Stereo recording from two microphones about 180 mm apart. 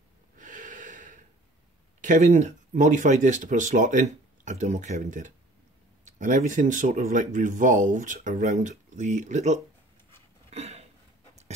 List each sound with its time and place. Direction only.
0.4 s snort: 45° right (ahead or behind)
2.0 s speech: 45° right (ahead or behind)
10.5 s a sound: 35° right (ahead or behind)